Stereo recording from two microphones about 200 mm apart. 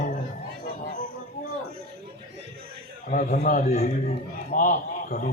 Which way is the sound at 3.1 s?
40° left (ahead or behind).